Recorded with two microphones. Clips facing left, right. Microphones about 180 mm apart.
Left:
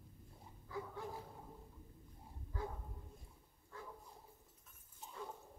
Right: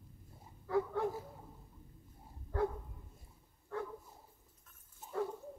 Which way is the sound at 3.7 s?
70° right (ahead or behind).